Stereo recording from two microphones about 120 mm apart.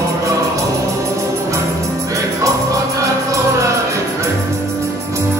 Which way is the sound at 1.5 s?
25° right (ahead or behind).